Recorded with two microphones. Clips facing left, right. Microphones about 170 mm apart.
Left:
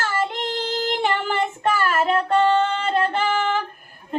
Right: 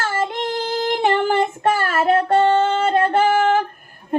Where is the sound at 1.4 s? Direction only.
40° right (ahead or behind).